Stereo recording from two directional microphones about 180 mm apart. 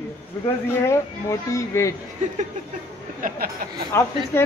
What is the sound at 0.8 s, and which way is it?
A man's voice, 15° left (ahead or behind).